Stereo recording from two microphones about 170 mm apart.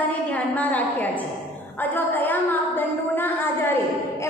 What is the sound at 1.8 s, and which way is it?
A woman's voice, 10° left (ahead or behind).